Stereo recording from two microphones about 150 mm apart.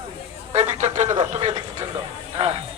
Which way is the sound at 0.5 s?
50° right (ahead or behind).